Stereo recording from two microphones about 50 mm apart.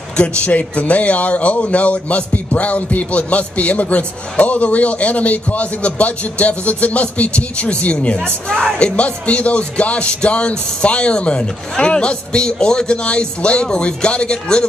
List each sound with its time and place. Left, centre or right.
0.2 s speech: left
8.7 s speech: left